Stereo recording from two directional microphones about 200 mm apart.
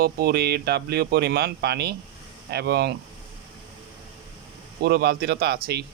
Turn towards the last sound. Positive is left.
turn(degrees=-50)  # may be behind; listen again after turning